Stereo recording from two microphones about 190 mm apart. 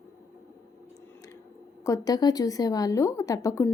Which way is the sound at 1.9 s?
20° left (ahead or behind).